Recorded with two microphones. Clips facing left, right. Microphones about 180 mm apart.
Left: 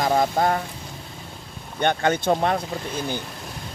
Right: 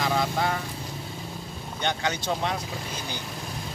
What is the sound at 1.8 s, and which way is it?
Speech, 55° left (ahead or behind).